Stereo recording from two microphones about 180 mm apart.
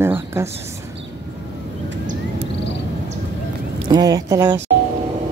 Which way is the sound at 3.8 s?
25° right (ahead or behind).